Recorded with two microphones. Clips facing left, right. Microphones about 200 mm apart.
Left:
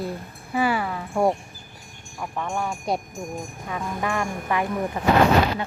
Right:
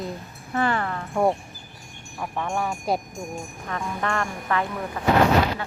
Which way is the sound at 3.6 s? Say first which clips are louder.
Even; 10° left (ahead or behind).